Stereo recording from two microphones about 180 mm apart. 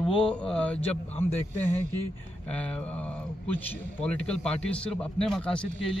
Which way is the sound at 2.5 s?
5° left (ahead or behind).